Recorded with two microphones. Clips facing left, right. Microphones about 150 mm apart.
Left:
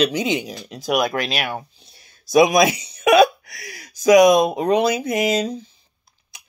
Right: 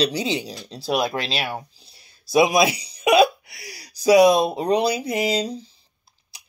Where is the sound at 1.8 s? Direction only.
30° right (ahead or behind).